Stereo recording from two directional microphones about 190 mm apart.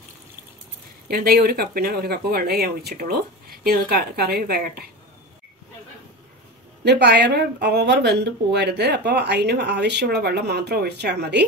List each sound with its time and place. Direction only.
1.0 s a woman's voice: 50° right (ahead or behind)
6.8 s speech: 60° right (ahead or behind)